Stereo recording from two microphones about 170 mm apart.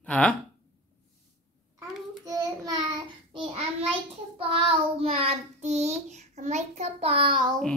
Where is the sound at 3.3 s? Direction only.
30° right (ahead or behind).